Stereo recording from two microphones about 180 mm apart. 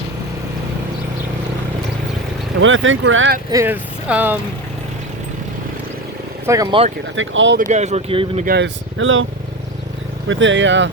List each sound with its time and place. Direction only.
2.6 s speech: 90° right
3.5 s speech: 15° right (ahead or behind)
6.4 s speech: 20° right (ahead or behind)
7.2 s speech: 90° right
7.6 s speech: 40° right (ahead or behind)
8.4 s speech: 75° right (ahead or behind)
10.2 s speech: 90° right